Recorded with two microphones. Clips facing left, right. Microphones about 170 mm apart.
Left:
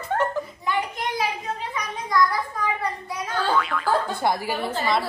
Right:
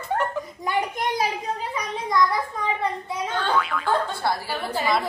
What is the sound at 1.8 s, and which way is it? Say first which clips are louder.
Speech: even; 25° right (ahead or behind).